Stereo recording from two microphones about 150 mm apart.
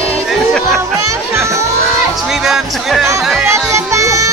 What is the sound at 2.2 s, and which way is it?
Music, 5° right (ahead or behind).